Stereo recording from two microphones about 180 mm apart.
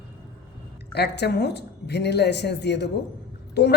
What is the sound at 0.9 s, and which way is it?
A woman's voice, 65° left (ahead or behind).